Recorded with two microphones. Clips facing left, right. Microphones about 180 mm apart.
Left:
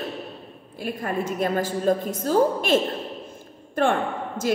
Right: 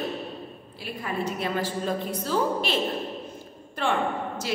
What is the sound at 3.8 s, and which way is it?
Speech, 50° left (ahead or behind).